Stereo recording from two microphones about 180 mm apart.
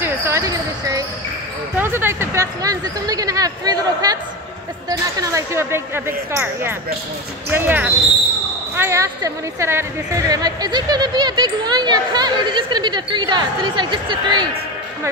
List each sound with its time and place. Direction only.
0.0 s basketball bounce: 15° right (ahead or behind)
1.8 s speech: 10° right (ahead or behind)